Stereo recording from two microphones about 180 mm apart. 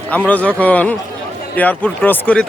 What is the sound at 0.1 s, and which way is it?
Speech, 10° left (ahead or behind).